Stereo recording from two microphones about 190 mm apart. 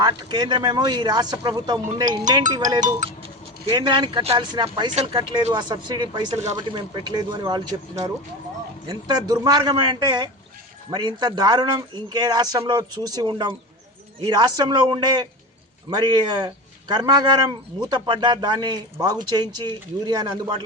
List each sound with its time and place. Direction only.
0.0 s speech: 20° right (ahead or behind)
2.8 s speech: 35° right (ahead or behind)
5.5 s speech: 20° right (ahead or behind)
6.3 s speech: 35° right (ahead or behind)
6.7 s speech: 20° right (ahead or behind)
8.9 s speech: 20° right (ahead or behind)